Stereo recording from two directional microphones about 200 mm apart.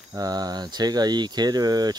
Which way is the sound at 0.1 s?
20° right (ahead or behind).